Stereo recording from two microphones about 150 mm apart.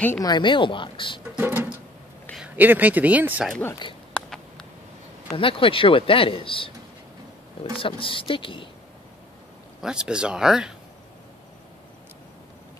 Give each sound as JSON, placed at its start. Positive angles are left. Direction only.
{"t": 0.2, "sound": "speech", "side_deg": 30}
{"t": 1.3, "sound": "a sound", "side_deg": -15}
{"t": 2.3, "sound": "speech", "side_deg": -10}
{"t": 4.1, "sound": "a sound", "side_deg": 5}
{"t": 5.4, "sound": "speech", "side_deg": 35}
{"t": 7.7, "sound": "speech", "side_deg": 35}
{"t": 9.8, "sound": "speech", "side_deg": -5}